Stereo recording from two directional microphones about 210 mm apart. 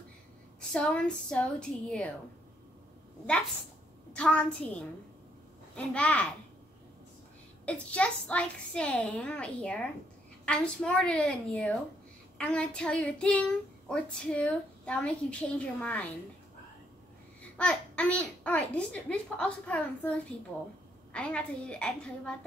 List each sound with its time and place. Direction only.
0.6 s speech: 5° left (ahead or behind)
4.1 s speech: 5° left (ahead or behind)
7.6 s speech: 5° left (ahead or behind)
17.4 s speech: 5° left (ahead or behind)